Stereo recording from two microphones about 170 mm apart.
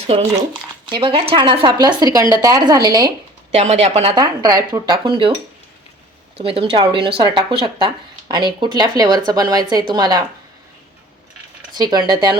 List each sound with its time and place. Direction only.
0.1 s speech: 35° right (ahead or behind)
3.5 s speech: 40° right (ahead or behind)
4.1 s speech: 25° right (ahead or behind)
6.4 s speech: 35° right (ahead or behind)
11.8 s speech: 25° right (ahead or behind)